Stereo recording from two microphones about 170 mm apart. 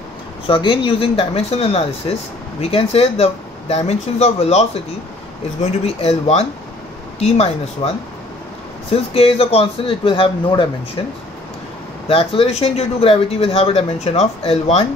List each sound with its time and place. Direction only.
0.5 s speech: 30° left (ahead or behind)
8.9 s speech: 35° left (ahead or behind)